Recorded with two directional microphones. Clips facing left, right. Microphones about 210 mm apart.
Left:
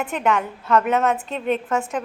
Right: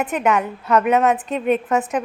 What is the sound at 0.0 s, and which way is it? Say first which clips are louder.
A woman's voice: right 3 dB; 20° right (ahead or behind).